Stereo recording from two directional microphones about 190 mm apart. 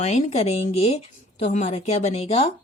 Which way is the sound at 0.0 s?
35° left (ahead or behind).